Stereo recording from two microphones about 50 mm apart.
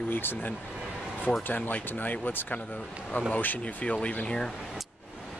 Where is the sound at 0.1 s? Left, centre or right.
Left.